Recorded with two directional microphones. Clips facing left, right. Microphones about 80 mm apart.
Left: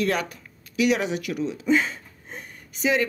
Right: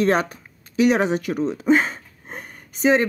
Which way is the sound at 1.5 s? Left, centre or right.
Right.